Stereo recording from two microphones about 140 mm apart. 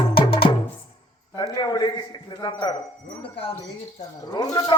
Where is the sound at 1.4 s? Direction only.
30° left (ahead or behind).